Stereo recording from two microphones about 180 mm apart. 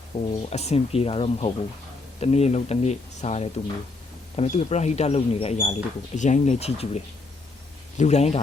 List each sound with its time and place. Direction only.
0.1 s speech: 35° left (ahead or behind)